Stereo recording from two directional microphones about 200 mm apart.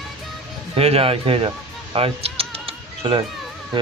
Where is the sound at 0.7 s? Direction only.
30° right (ahead or behind).